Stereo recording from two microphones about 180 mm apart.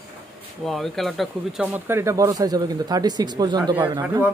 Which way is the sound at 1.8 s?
15° right (ahead or behind).